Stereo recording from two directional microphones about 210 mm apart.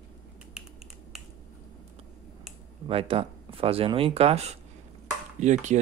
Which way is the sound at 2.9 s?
25° right (ahead or behind).